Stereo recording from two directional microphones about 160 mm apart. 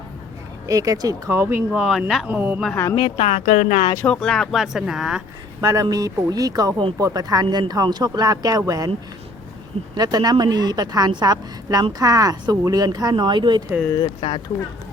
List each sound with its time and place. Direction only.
0.7 s speech: 20° right (ahead or behind)
3.2 s speech: 55° left (ahead or behind)
3.9 s speech: 5° left (ahead or behind)
5.5 s a woman's voice: 20° right (ahead or behind)
9.9 s a woman's voice: 25° right (ahead or behind)
14.0 s speech: 35° left (ahead or behind)